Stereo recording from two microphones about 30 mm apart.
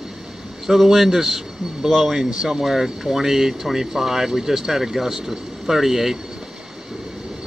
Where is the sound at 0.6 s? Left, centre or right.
Centre.